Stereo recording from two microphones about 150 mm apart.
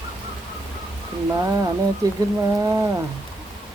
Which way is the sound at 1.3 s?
20° right (ahead or behind).